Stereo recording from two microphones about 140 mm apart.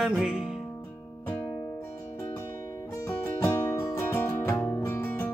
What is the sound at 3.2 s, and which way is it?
Music, 15° left (ahead or behind).